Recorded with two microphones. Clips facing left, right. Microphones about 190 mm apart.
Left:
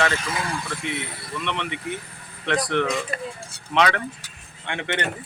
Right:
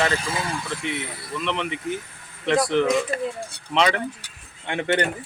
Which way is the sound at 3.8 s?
30° right (ahead or behind).